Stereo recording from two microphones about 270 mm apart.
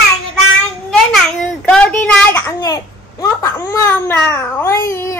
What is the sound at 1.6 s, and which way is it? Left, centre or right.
A child's voice, centre.